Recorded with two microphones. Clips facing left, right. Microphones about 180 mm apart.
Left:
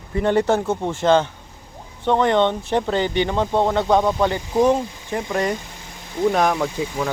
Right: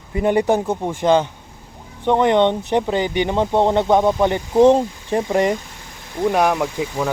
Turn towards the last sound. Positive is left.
turn(degrees=-5)  # may be behind; listen again after turning